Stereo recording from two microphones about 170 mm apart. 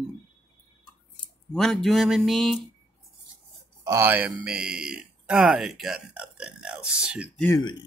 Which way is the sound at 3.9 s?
10° right (ahead or behind).